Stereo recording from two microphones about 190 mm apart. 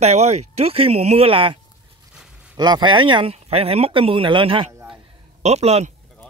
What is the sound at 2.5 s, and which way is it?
A man's voice, 20° right (ahead or behind).